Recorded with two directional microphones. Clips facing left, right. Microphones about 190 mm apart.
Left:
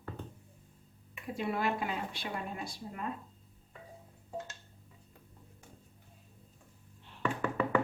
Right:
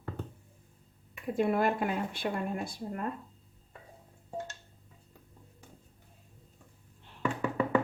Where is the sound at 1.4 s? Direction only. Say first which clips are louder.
Right 6 dB; 50° right (ahead or behind).